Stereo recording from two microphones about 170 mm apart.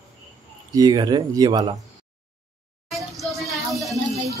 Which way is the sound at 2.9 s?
Centre (ahead or behind).